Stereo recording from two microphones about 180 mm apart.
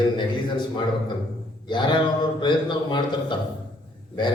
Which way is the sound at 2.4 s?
25° left (ahead or behind).